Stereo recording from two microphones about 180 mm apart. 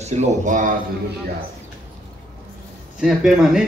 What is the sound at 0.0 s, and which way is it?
Speech, 40° right (ahead or behind).